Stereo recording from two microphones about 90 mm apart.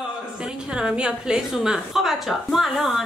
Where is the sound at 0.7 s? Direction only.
10° right (ahead or behind).